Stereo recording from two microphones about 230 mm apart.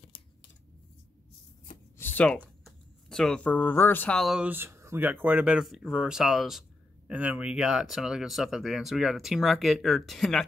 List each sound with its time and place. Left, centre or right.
0.1 s scissors: left
2.0 s a sound: centre
2.4 s speech: centre